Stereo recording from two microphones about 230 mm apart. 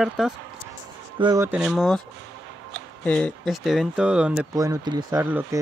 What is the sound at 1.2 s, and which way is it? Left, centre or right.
Speech, centre.